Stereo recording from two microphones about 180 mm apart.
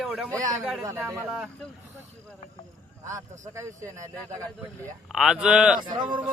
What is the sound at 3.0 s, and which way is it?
A man's voice, 15° right (ahead or behind).